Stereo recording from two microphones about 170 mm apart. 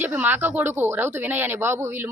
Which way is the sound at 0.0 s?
10° right (ahead or behind).